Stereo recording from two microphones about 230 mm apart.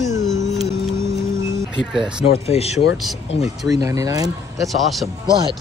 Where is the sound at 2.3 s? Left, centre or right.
Left.